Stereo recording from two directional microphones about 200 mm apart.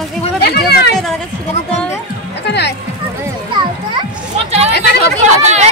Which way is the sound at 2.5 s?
55° left (ahead or behind).